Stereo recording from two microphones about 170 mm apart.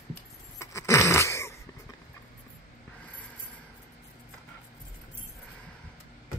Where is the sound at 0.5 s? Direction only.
15° left (ahead or behind).